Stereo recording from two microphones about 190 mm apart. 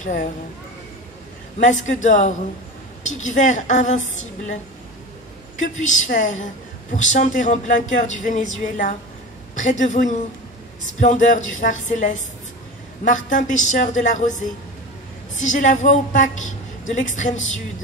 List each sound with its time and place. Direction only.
0.0 s speech: 45° left (ahead or behind)
1.6 s a woman's voice: 40° left (ahead or behind)
5.6 s a woman's voice: 40° left (ahead or behind)